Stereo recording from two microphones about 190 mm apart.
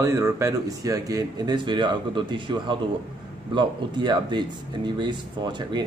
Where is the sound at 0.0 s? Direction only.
15° right (ahead or behind).